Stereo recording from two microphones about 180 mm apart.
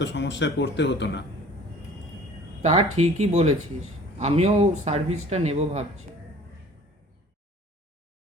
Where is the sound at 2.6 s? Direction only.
35° right (ahead or behind).